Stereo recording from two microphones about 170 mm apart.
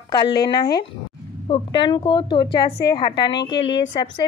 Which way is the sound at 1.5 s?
25° left (ahead or behind).